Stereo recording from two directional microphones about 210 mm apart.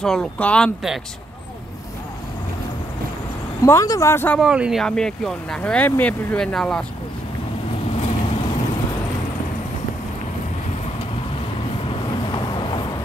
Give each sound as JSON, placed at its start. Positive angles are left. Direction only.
{"t": 0.0, "sound": "speech", "side_deg": 5}
{"t": 3.6, "sound": "speech", "side_deg": 15}
{"t": 4.4, "sound": "speech", "side_deg": -5}
{"t": 7.9, "sound": "vehicle", "side_deg": 25}
{"t": 11.9, "sound": "vehicle", "side_deg": 20}